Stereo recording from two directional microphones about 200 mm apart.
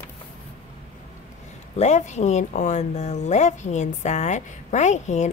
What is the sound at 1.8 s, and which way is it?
A woman's voice, 35° left (ahead or behind).